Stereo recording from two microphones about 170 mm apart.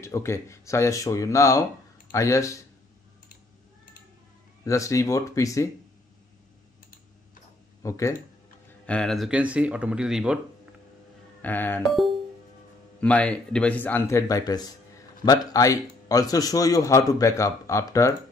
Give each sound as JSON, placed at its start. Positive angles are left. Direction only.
{"t": 0.0, "sound": "speech", "side_deg": 15}
{"t": 4.6, "sound": "a man's voice", "side_deg": 20}
{"t": 7.8, "sound": "speech", "side_deg": 15}
{"t": 8.8, "sound": "speech", "side_deg": 5}
{"t": 11.4, "sound": "speech", "side_deg": 10}
{"t": 13.0, "sound": "a man's voice", "side_deg": 5}